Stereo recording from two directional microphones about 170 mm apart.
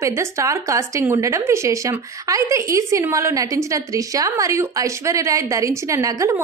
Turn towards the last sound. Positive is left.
turn(degrees=-20)  # may be behind; listen again after turning